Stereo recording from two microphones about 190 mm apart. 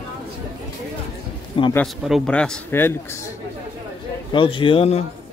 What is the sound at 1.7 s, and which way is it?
A man's voice, centre (ahead or behind).